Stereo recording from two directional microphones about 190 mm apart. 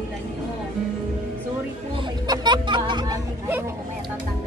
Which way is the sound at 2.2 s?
20° right (ahead or behind).